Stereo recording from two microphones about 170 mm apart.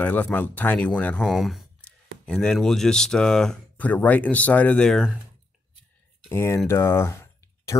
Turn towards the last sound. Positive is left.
turn(degrees=15)  # may be behind; listen again after turning